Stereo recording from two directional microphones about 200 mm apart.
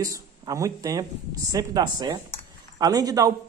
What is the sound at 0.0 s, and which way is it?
Speech, 15° right (ahead or behind).